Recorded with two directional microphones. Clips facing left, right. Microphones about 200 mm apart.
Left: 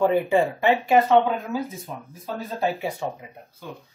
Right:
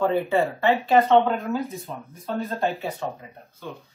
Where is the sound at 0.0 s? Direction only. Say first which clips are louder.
Left 2 dB; 15° left (ahead or behind).